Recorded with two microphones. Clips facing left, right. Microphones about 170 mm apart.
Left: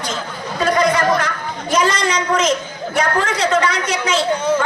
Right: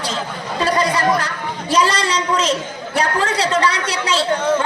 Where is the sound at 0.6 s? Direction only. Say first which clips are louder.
Left 2 dB; 35° right (ahead or behind).